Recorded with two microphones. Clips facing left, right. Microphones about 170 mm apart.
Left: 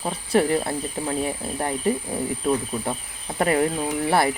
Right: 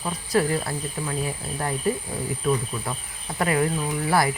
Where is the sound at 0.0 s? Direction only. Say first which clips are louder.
Left 2 dB; 30° left (ahead or behind).